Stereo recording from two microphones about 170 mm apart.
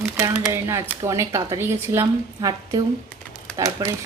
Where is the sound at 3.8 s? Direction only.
20° right (ahead or behind).